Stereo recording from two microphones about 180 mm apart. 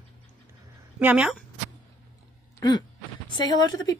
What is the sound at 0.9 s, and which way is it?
Speech, 5° right (ahead or behind).